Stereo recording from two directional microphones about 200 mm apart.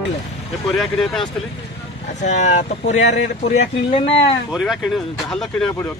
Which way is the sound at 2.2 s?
35° left (ahead or behind).